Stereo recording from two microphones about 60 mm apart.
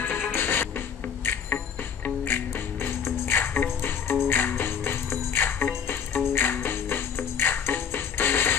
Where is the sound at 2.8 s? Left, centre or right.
Left.